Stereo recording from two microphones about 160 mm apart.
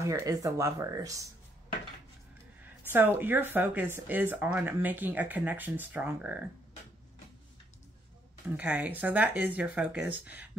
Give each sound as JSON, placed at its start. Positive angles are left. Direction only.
{"t": 0.0, "sound": "speech", "side_deg": -20}
{"t": 2.6, "sound": "speech", "side_deg": -10}
{"t": 8.5, "sound": "speech", "side_deg": -10}